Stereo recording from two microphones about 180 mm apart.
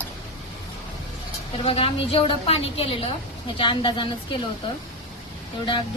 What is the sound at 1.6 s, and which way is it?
A woman's voice, 30° left (ahead or behind).